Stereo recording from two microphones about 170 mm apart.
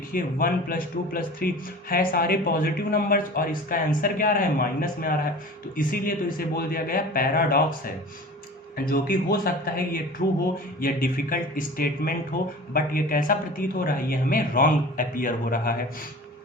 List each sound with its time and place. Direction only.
0.1 s speech: 60° left (ahead or behind)
8.9 s speech: 60° left (ahead or behind)